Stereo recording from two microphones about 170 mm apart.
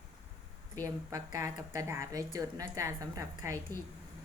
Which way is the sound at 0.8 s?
20° right (ahead or behind).